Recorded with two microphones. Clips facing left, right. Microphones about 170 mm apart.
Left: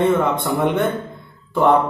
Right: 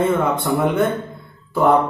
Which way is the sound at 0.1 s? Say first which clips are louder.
Even; centre (ahead or behind).